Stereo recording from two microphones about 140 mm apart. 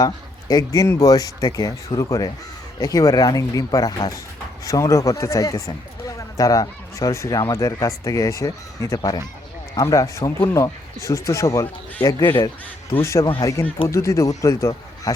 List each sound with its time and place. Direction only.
0.0 s speech: 25° left (ahead or behind)
13.2 s speech: 35° left (ahead or behind)
13.8 s speech: 20° left (ahead or behind)